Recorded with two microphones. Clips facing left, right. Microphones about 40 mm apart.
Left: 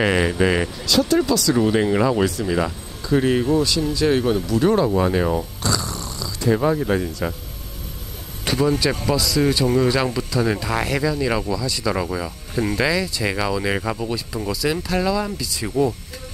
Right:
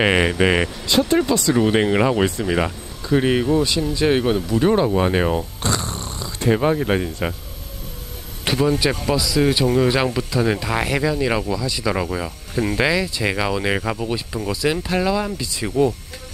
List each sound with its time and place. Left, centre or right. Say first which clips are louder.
0.0 s speech: right 1 dB; right
8.5 s speech: right 1 dB; right
9.1 s speech: right 1 dB; centre
12.5 s speech: right 1 dB; right
12.8 s speech: right 2 dB; centre